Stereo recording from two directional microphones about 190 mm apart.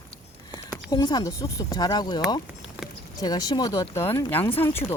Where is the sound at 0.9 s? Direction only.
20° left (ahead or behind).